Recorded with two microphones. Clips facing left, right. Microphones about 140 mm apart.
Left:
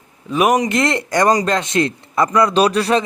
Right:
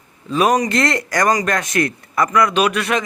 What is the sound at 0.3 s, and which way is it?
Speech, 20° left (ahead or behind).